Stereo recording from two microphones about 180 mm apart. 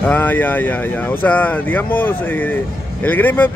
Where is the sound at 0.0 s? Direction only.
10° left (ahead or behind).